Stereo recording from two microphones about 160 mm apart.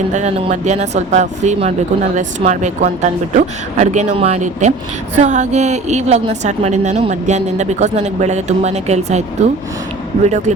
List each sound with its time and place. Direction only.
0.1 s speech: 40° right (ahead or behind)
10.2 s speech: 50° right (ahead or behind)